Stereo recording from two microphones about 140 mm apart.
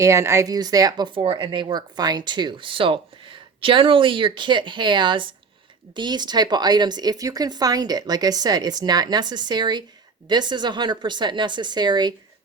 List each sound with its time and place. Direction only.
0.0 s speech: 20° right (ahead or behind)